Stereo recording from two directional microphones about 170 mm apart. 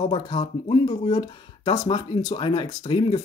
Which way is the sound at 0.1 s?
30° left (ahead or behind).